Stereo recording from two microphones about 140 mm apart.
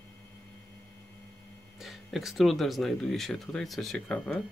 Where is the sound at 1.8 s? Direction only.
Centre (ahead or behind).